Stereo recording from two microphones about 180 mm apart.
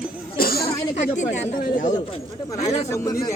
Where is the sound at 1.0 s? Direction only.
40° left (ahead or behind).